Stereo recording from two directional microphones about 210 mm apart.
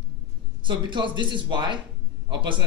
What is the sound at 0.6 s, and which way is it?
A man's voice, 20° right (ahead or behind).